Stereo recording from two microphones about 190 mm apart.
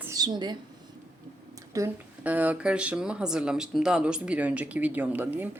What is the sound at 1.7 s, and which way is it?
Speech, 10° right (ahead or behind).